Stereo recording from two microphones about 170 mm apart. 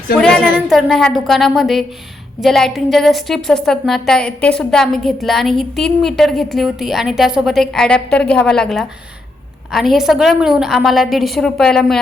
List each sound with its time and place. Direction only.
0.7 s a woman's voice: centre (ahead or behind)